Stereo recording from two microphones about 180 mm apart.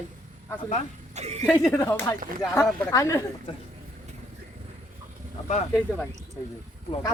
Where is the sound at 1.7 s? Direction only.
15° left (ahead or behind).